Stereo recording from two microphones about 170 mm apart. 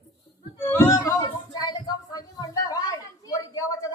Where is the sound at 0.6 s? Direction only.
15° left (ahead or behind).